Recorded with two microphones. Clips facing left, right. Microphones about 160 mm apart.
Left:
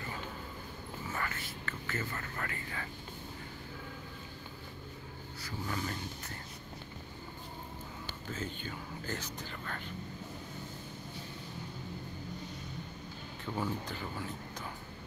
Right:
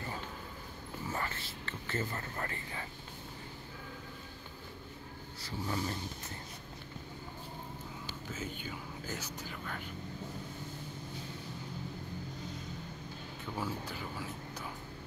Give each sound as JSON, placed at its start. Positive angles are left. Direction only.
{"t": 1.1, "sound": "whispering", "side_deg": -25}
{"t": 5.7, "sound": "speech", "side_deg": -20}
{"t": 8.3, "sound": "speech", "side_deg": -5}
{"t": 13.6, "sound": "speech", "side_deg": -5}